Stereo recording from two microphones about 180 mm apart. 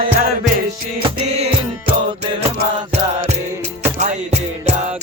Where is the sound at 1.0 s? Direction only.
35° right (ahead or behind).